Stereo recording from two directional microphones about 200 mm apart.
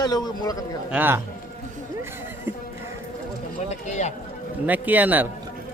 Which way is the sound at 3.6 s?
35° left (ahead or behind).